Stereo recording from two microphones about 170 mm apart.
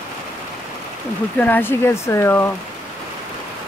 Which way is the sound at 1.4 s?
10° left (ahead or behind).